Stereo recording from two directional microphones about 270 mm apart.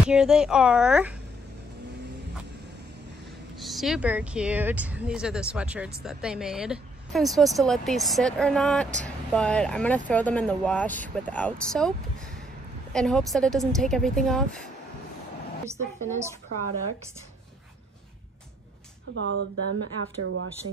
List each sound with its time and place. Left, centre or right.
0.1 s speech: centre
3.5 s speech: centre
12.9 s speech: centre
16.1 s a woman's voice: centre
19.1 s speech: right